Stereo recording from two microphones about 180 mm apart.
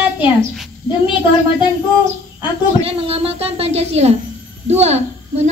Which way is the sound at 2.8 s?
35° right (ahead or behind).